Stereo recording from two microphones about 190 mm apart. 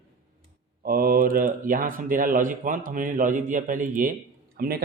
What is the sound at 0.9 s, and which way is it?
Speech, 50° right (ahead or behind).